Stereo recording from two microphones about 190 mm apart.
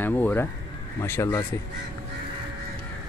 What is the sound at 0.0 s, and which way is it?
Speech, 10° left (ahead or behind).